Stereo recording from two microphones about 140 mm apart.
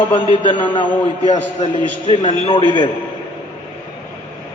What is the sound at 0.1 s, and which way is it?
Speech, 60° left (ahead or behind).